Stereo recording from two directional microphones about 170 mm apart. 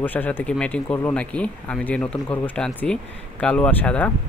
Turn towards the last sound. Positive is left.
turn(degrees=10)  # may be behind; listen again after turning